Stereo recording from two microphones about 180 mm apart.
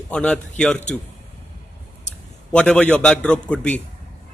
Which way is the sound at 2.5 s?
5° left (ahead or behind).